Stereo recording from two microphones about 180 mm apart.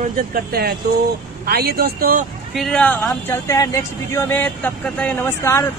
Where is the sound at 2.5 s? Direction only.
5° left (ahead or behind).